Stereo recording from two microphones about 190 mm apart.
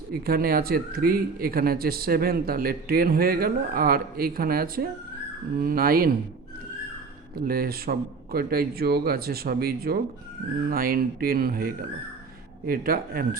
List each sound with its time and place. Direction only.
0.1 s speech: 50° right (ahead or behind)
7.3 s speech: 50° right (ahead or behind)